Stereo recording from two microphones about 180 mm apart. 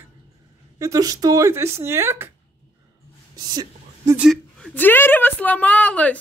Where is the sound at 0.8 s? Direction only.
20° right (ahead or behind).